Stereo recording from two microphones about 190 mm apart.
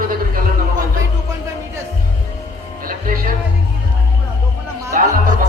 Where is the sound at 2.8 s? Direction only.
45° right (ahead or behind).